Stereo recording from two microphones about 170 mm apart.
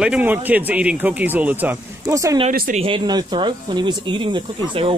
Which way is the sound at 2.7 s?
30° right (ahead or behind).